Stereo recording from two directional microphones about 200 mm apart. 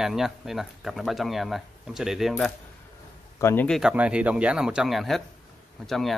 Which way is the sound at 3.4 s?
10° left (ahead or behind).